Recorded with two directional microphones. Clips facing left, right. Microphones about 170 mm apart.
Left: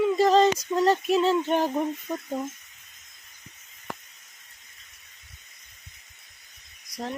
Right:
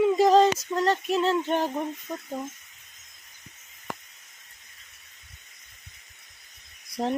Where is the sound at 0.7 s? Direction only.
10° left (ahead or behind).